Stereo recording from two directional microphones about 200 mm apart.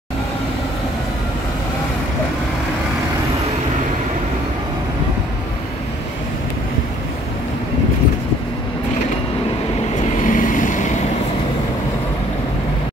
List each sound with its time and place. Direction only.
10.2 s vehicle: 40° left (ahead or behind)